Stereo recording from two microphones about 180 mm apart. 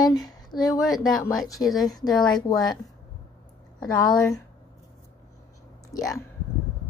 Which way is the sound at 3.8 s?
20° left (ahead or behind).